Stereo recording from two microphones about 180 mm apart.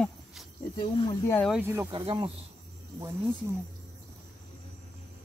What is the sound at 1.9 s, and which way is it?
Speech, 25° right (ahead or behind).